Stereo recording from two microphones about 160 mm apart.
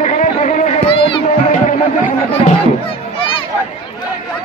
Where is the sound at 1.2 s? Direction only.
50° left (ahead or behind).